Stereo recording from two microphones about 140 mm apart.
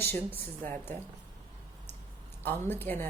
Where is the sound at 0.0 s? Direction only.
15° left (ahead or behind).